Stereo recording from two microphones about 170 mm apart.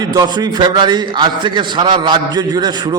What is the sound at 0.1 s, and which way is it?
A man's voice, 25° right (ahead or behind).